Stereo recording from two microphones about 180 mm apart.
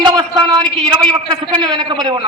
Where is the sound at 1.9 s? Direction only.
25° right (ahead or behind).